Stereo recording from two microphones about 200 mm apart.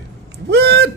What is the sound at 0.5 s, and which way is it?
Speech, 55° right (ahead or behind).